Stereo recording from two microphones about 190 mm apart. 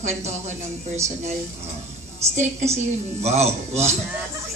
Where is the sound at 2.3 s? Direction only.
35° right (ahead or behind).